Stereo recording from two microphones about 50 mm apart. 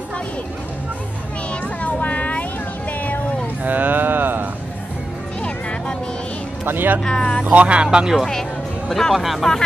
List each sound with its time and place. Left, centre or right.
1.5 s music: left
3.0 s a sound: left
3.6 s a sound: right
5.4 s music: left
6.6 s speech: right
7.0 s speech: centre
7.4 s speech: right
8.3 s speech: centre